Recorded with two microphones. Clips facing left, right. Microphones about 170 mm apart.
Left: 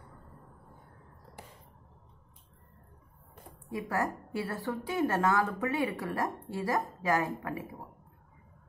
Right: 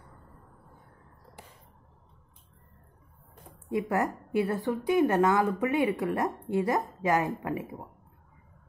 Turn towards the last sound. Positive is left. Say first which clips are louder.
# right 4 dB
turn(degrees=-20)  # may be behind; listen again after turning